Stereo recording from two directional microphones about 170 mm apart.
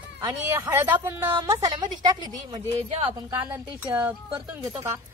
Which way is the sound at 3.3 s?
10° right (ahead or behind).